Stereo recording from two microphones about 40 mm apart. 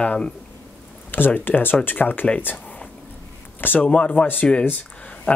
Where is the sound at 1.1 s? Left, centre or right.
Left.